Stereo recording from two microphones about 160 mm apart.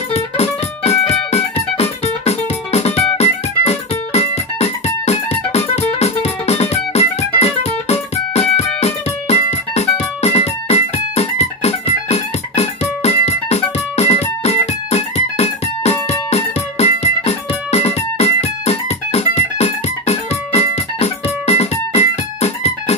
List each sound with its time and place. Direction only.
0.1 s music: 40° left (ahead or behind)